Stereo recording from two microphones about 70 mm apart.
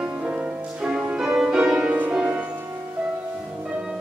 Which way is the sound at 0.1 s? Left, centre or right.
Centre.